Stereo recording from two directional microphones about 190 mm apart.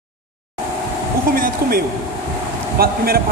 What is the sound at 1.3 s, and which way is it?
Speech, 50° right (ahead or behind).